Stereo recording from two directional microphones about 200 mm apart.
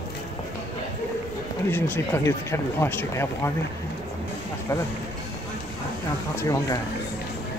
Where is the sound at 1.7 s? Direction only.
10° left (ahead or behind).